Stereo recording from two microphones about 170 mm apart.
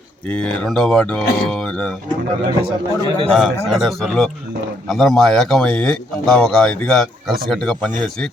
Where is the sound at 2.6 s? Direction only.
35° right (ahead or behind).